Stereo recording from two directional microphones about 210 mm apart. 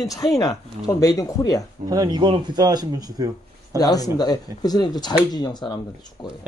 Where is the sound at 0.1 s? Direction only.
15° left (ahead or behind).